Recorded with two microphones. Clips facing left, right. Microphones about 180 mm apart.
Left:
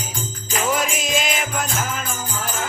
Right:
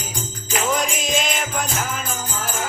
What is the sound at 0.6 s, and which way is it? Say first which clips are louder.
Music: left 1 dB; centre (ahead or behind).